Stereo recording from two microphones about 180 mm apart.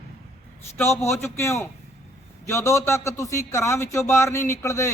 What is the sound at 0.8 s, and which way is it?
Speech, 15° left (ahead or behind).